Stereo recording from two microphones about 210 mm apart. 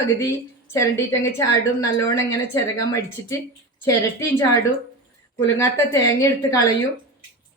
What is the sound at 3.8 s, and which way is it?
Speech, 15° left (ahead or behind).